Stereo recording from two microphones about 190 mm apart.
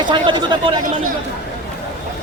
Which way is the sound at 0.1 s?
25° right (ahead or behind).